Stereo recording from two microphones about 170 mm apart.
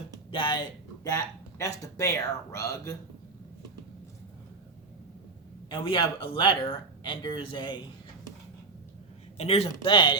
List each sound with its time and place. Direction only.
0.3 s speech: 30° left (ahead or behind)
5.6 s speech: 30° left (ahead or behind)
9.4 s speech: 35° left (ahead or behind)